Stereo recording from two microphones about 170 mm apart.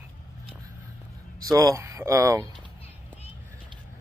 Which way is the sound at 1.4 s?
20° right (ahead or behind).